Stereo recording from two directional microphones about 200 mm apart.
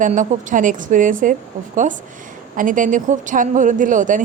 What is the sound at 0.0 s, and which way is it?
A woman's voice, 40° right (ahead or behind).